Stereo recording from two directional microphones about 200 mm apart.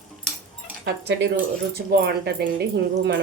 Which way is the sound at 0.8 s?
55° right (ahead or behind).